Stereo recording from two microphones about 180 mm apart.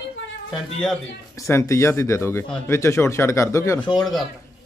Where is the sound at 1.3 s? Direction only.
15° left (ahead or behind).